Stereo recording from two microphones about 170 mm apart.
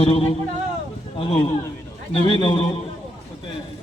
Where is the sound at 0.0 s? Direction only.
35° left (ahead or behind).